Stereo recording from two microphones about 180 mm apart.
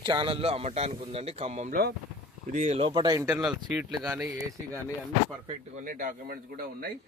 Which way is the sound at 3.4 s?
5° right (ahead or behind).